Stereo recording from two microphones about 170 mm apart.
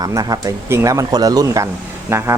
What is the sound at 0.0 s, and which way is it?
Speech, 20° right (ahead or behind).